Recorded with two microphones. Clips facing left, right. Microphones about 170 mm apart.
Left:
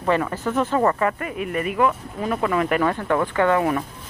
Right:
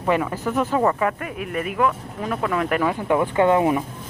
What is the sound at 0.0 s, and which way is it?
Speech, 10° right (ahead or behind).